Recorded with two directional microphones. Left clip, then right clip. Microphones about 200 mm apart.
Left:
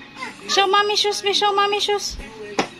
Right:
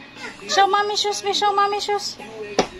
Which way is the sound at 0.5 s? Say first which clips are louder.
Even; 25° left (ahead or behind).